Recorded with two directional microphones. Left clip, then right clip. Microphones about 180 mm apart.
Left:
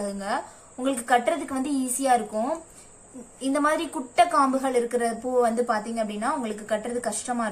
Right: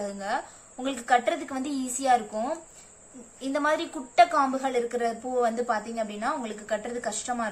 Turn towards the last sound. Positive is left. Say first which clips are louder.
# left 2 dB
turn(degrees=0)  # may be behind; listen again after turning